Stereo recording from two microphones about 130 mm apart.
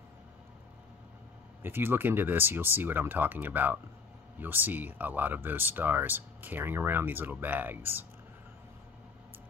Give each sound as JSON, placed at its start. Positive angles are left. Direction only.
{"t": 1.6, "sound": "speech", "side_deg": -15}